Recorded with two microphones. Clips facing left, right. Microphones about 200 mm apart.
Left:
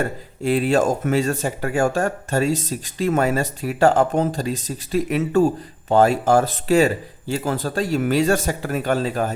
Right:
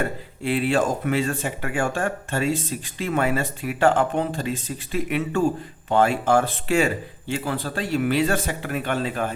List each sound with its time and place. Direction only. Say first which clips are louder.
0.0 s speech: left 3 dB; 40° left (ahead or behind)